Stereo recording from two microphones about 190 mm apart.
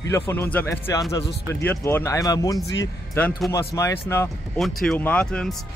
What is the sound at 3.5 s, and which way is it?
Speech, 15° left (ahead or behind).